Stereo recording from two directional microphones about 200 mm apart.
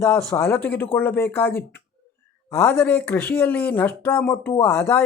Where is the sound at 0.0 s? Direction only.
10° left (ahead or behind).